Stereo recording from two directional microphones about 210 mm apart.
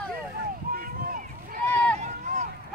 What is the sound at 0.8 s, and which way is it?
Run, 40° right (ahead or behind).